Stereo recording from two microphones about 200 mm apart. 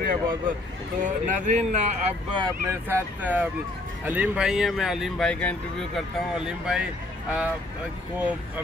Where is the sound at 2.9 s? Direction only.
10° right (ahead or behind).